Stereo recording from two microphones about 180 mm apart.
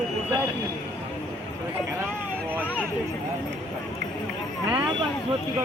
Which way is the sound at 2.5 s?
10° right (ahead or behind).